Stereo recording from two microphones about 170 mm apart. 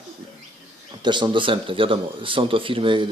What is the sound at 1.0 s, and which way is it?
Speech, 25° right (ahead or behind).